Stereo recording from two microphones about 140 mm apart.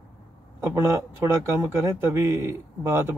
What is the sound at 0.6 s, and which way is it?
A man's voice, 20° right (ahead or behind).